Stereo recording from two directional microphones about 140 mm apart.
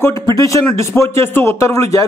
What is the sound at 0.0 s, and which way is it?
Speech, 25° left (ahead or behind).